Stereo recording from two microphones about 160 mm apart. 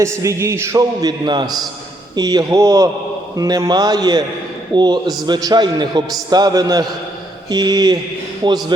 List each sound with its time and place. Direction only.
0.0 s a man's voice: 20° right (ahead or behind)